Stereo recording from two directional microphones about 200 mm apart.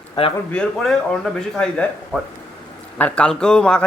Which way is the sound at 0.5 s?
5° left (ahead or behind).